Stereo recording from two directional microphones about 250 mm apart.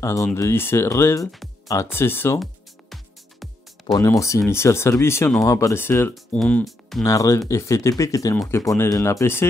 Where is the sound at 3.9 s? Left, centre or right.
Centre.